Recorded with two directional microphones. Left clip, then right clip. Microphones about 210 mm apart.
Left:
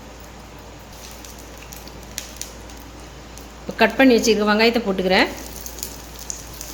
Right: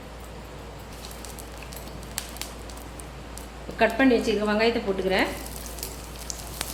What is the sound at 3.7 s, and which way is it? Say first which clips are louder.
A woman's voice: left 6 dB; 50° left (ahead or behind).